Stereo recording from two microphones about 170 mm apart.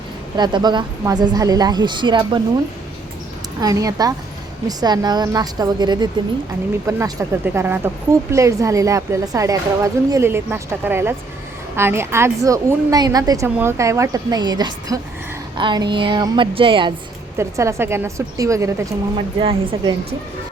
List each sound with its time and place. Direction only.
0.3 s a woman's voice: 25° right (ahead or behind)
3.6 s a woman's voice: 20° right (ahead or behind)
17.3 s a woman's voice: 15° right (ahead or behind)
19.1 s a woman's voice: 30° right (ahead or behind)